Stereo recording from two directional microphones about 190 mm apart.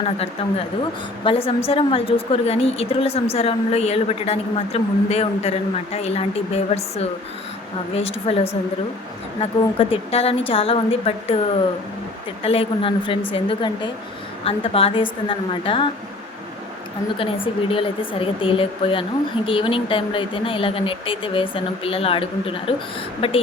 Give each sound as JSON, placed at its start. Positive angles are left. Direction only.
{"t": 1.2, "sound": "a woman's voice", "side_deg": 30}
{"t": 17.2, "sound": "speech", "side_deg": 30}